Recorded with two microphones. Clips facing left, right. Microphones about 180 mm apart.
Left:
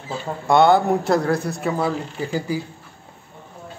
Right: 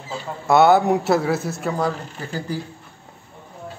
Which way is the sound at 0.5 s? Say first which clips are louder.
Right 1 dB; 5° right (ahead or behind).